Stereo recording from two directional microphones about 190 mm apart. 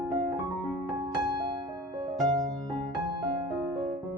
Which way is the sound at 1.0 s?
20° right (ahead or behind).